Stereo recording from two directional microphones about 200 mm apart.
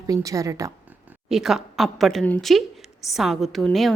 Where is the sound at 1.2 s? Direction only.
Centre (ahead or behind).